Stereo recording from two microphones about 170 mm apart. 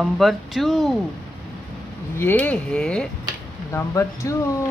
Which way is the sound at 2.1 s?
10° left (ahead or behind).